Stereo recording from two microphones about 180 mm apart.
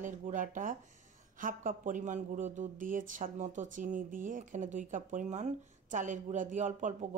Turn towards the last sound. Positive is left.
turn(degrees=-40)  # may be behind; listen again after turning